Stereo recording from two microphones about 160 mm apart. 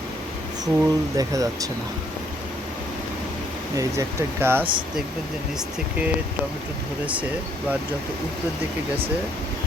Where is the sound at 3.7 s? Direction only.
20° right (ahead or behind).